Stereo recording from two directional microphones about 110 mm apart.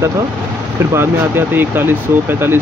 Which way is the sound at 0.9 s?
20° right (ahead or behind).